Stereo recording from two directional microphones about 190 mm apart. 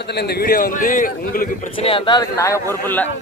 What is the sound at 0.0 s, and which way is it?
A man's voice, 60° left (ahead or behind).